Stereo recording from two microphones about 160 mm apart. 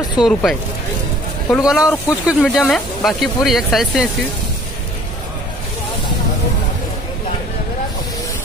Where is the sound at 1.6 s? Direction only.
5° right (ahead or behind).